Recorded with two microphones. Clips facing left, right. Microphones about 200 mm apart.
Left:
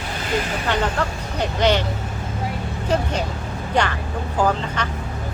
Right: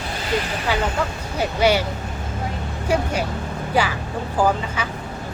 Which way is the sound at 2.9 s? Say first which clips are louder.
Right 1 dB; 10° right (ahead or behind).